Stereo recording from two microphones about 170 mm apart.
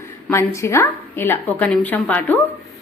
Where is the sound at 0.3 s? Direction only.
15° left (ahead or behind).